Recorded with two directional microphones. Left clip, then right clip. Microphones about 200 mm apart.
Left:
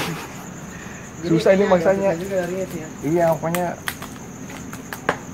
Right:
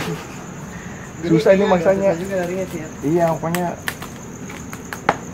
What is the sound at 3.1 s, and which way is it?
Cricket, 25° left (ahead or behind).